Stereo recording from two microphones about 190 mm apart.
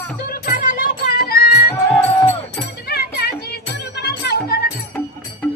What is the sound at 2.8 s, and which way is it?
Music, 55° left (ahead or behind).